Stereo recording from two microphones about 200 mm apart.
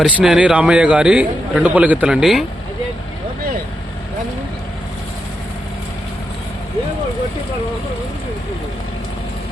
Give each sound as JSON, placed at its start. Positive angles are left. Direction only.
{"t": 0.0, "sound": "a man's voice", "side_deg": -5}